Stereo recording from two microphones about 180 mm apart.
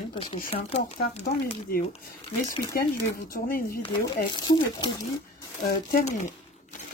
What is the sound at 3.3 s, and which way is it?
Speech, 55° left (ahead or behind).